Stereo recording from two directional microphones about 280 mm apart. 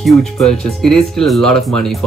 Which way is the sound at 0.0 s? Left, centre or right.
Centre.